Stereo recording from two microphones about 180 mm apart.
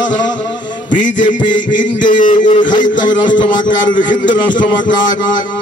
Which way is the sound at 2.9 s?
25° left (ahead or behind).